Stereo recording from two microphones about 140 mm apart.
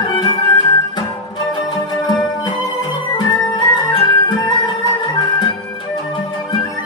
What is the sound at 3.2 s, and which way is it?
Music, 30° left (ahead or behind).